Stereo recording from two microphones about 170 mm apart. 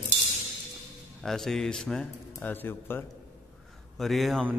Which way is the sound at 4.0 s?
Centre (ahead or behind).